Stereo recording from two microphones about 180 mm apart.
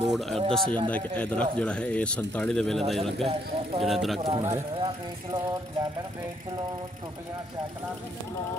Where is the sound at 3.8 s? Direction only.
Centre (ahead or behind).